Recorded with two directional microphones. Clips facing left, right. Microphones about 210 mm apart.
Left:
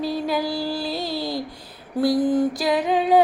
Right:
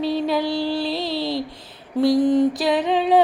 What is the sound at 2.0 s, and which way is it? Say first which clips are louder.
Mantra: right 3 dB; 5° left (ahead or behind).